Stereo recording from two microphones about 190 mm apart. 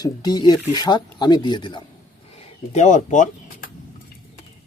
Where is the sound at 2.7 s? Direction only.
40° left (ahead or behind).